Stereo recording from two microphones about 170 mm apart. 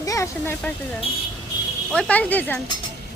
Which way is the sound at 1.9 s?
5° left (ahead or behind).